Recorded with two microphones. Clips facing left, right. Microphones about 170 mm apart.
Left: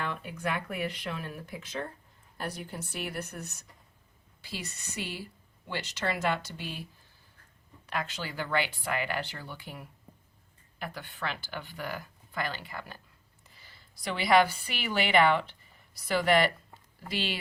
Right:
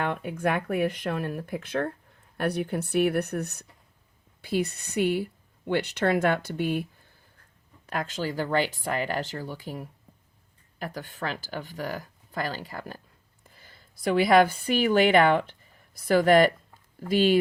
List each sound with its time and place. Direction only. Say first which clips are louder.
0.0 s speech: right 7 dB; 55° right (ahead or behind)
7.9 s a woman's voice: right 5 dB; 45° right (ahead or behind)